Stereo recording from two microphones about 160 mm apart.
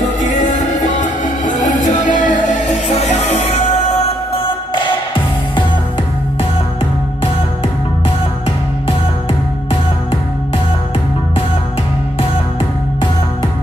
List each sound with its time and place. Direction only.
0.0 s music: 55° left (ahead or behind); by 5.2 s 30° left (ahead or behind)